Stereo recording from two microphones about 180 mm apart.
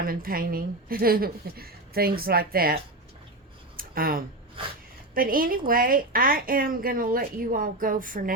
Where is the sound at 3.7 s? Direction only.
55° right (ahead or behind).